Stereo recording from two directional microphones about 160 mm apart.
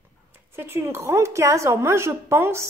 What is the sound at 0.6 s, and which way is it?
Speech, 15° right (ahead or behind).